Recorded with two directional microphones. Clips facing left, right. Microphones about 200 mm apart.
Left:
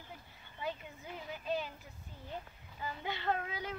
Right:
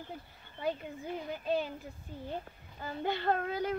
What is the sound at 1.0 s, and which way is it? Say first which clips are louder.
Speech: right 5 dB; 35° right (ahead or behind).